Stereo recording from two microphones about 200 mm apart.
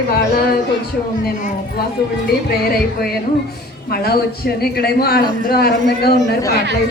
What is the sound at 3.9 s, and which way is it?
A man's voice, 50° left (ahead or behind).